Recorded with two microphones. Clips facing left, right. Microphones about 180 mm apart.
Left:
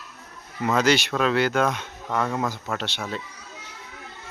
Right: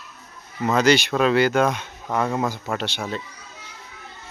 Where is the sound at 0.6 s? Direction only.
5° left (ahead or behind).